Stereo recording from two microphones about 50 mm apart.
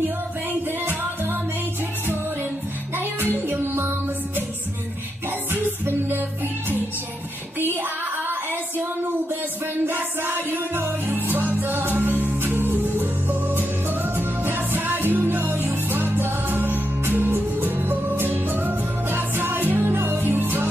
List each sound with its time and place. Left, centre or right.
3.4 s music: right
5.5 s music: right
9.8 s music: right